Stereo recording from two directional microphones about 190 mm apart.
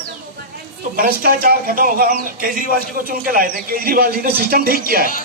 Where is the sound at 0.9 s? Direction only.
50° right (ahead or behind).